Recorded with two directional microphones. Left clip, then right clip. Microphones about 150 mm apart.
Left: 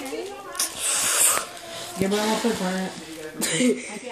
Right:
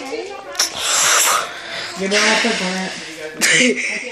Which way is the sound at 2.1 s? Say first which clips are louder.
Right 10 dB; 20° left (ahead or behind).